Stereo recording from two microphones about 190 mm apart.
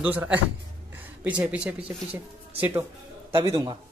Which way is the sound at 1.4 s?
5° right (ahead or behind).